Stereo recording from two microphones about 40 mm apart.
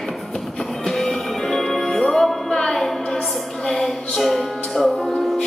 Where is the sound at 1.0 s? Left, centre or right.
Centre.